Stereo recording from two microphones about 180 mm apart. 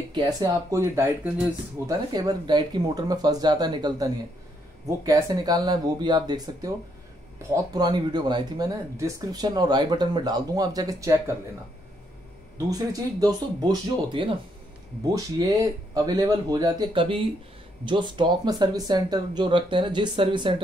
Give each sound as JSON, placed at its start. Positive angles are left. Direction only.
{"t": 0.1, "sound": "speech", "side_deg": -20}
{"t": 12.5, "sound": "speech", "side_deg": -20}